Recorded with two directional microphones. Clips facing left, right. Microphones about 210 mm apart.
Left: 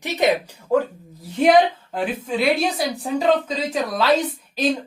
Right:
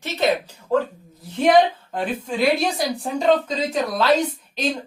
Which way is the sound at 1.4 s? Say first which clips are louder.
Left 1 dB; 5° left (ahead or behind).